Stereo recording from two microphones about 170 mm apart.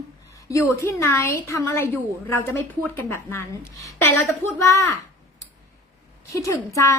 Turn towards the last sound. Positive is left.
turn(degrees=15)  # may be behind; listen again after turning